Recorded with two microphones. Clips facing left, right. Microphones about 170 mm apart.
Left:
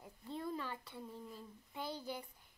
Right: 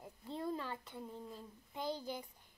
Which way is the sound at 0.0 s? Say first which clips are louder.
Right 2 dB; 15° right (ahead or behind).